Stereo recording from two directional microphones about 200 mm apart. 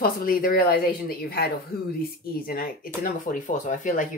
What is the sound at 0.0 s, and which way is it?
Speech, 45° left (ahead or behind).